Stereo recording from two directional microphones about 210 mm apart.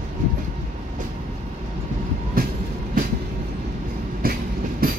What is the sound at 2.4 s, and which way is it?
Train, 45° right (ahead or behind).